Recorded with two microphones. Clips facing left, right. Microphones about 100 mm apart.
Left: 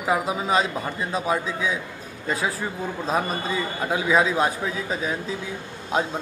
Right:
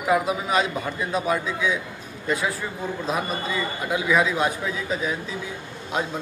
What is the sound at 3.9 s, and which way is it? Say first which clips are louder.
Speech: left 1 dB; 25° left (ahead or behind).